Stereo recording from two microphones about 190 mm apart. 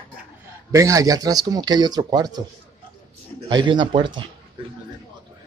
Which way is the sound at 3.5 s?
25° right (ahead or behind).